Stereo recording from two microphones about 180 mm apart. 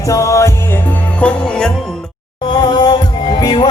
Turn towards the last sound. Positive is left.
turn(degrees=25)  # may be behind; listen again after turning